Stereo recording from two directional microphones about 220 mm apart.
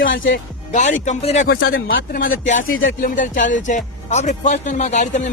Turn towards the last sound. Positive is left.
turn(degrees=35)  # may be behind; listen again after turning